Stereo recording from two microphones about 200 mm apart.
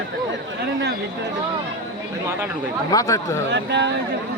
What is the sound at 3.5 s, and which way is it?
Speech, 60° right (ahead or behind).